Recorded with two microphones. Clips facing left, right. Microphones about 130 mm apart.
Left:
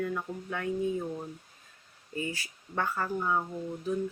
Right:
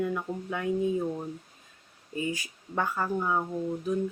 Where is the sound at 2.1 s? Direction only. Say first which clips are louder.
Right 3 dB; 20° right (ahead or behind).